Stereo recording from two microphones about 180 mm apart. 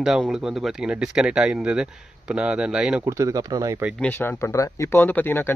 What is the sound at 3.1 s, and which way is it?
Speech, 15° right (ahead or behind).